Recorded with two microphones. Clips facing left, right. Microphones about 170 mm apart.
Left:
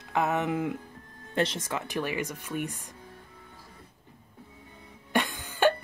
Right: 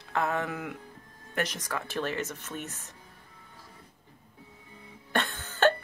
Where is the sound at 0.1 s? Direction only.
20° left (ahead or behind).